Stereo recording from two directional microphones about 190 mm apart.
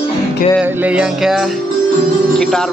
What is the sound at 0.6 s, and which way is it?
Music, 10° right (ahead or behind).